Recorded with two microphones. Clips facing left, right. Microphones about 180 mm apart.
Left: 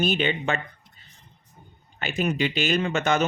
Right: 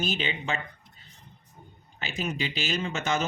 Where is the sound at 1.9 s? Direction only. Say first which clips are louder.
Left 7 dB; 60° left (ahead or behind).